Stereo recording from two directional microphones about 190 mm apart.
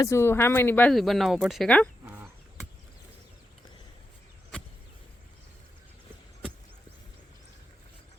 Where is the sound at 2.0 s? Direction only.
10° right (ahead or behind).